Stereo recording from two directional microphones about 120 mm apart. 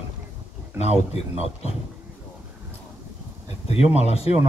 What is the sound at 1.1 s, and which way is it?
Speech, 60° left (ahead or behind).